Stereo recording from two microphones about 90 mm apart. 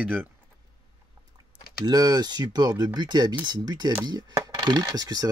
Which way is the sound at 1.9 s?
50° right (ahead or behind).